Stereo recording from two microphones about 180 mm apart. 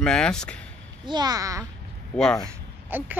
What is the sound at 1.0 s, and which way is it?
Speech, 25° right (ahead or behind).